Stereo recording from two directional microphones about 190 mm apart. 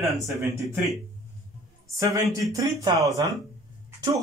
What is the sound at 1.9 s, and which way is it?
Speech, 15° right (ahead or behind).